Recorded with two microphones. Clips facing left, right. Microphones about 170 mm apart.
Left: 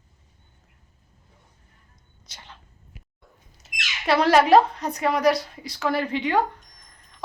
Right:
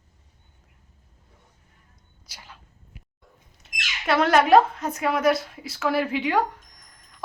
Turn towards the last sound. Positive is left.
turn(degrees=-5)  # may be behind; listen again after turning